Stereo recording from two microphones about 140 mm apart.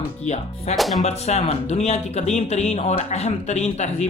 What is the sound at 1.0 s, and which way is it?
Speech, 50° left (ahead or behind).